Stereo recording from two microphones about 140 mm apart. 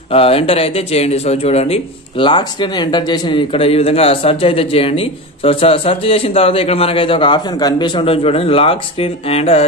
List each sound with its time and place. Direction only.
0.1 s speech: 45° left (ahead or behind)